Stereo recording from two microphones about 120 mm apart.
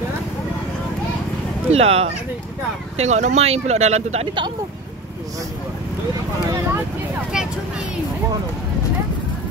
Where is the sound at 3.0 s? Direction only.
75° right (ahead or behind).